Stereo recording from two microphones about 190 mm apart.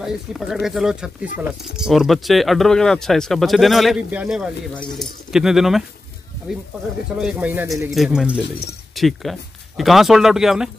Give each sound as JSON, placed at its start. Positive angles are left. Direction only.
{"t": 0.0, "sound": "speech", "side_deg": 0}
{"t": 7.2, "sound": "speech", "side_deg": -5}